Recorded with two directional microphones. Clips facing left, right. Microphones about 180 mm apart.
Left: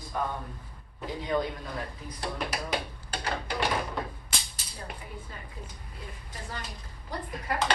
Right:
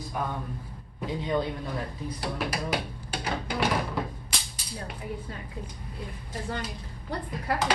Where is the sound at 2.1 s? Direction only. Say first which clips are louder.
Right 1 dB; 5° right (ahead or behind).